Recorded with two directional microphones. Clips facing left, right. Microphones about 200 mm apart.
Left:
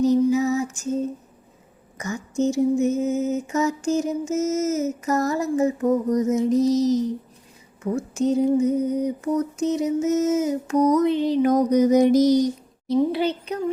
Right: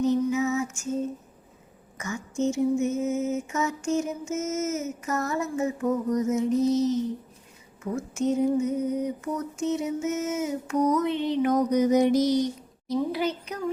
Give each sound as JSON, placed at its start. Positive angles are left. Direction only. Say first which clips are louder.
{"t": 0.0, "sound": "music", "louder": "left 5 dB", "side_deg": 35}
{"t": 2.0, "sound": "mantra", "louder": "left 4 dB", "side_deg": 35}
{"t": 12.9, "sound": "a child's voice", "louder": "left 6 dB", "side_deg": 30}